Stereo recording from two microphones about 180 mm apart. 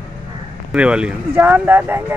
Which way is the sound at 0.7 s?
5° right (ahead or behind).